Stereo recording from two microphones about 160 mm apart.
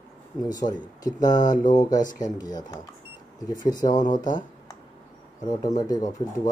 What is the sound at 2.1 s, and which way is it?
Speech, 25° left (ahead or behind).